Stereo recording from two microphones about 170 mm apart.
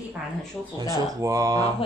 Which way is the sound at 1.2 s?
20° right (ahead or behind).